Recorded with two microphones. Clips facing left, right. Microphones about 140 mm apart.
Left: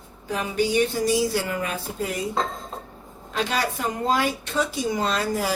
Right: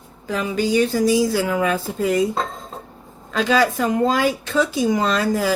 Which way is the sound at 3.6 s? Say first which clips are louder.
Right 8 dB; 90° right.